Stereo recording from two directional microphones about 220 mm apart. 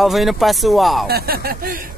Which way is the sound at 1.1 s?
45° right (ahead or behind).